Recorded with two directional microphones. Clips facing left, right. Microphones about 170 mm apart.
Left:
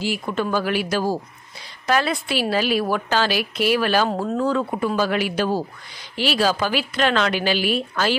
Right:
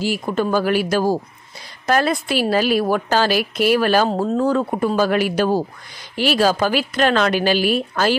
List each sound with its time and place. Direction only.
0.0 s a woman's voice: 40° right (ahead or behind)